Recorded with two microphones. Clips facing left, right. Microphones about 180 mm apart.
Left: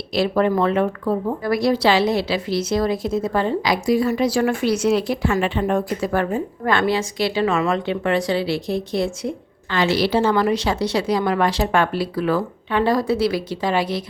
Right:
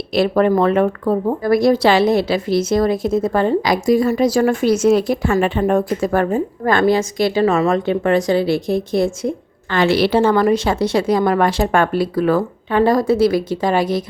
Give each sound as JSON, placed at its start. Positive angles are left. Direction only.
{"t": 0.1, "sound": "speech", "side_deg": -55}